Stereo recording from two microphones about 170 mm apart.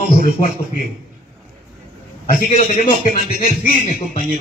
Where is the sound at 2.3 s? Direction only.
45° left (ahead or behind).